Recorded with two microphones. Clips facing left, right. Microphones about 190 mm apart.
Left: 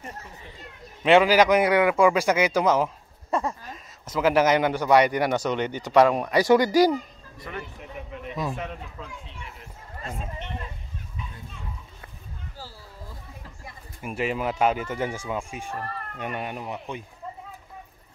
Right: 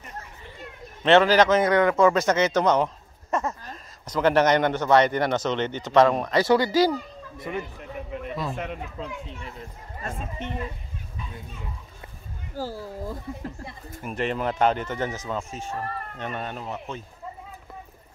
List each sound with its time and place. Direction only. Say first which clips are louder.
1.0 s a man's voice: even; 10° left (ahead or behind)
7.5 s speech: right 5 dB; 15° right (ahead or behind)
12.5 s speech: right 16 dB; 50° right (ahead or behind)
14.0 s a man's voice: even; 5° left (ahead or behind)